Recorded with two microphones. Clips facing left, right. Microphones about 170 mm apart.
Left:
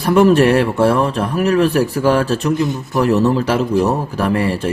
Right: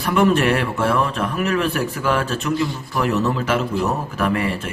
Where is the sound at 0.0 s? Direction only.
40° left (ahead or behind).